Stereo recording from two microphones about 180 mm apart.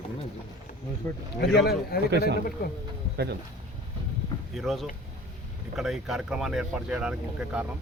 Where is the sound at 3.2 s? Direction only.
70° right (ahead or behind).